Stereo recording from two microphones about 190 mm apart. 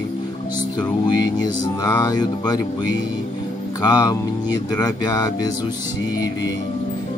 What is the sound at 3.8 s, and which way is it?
Music, 20° left (ahead or behind).